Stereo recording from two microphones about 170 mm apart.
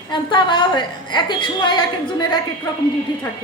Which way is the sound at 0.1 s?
25° left (ahead or behind).